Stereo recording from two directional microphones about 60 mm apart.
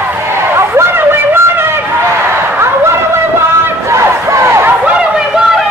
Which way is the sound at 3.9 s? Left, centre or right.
Right.